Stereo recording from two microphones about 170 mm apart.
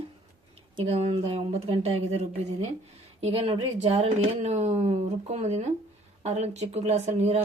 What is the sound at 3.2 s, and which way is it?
A woman's voice, 35° right (ahead or behind).